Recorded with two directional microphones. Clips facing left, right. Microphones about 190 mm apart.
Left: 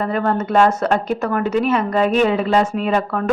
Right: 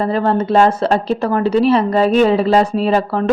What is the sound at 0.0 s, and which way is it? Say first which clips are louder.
Speech: right 3 dB; 30° right (ahead or behind).